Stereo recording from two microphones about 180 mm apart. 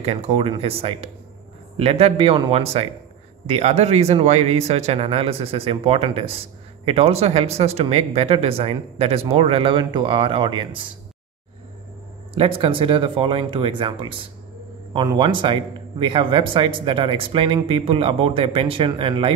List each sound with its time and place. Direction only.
0.0 s speech: 35° right (ahead or behind)
12.4 s speech: 30° right (ahead or behind)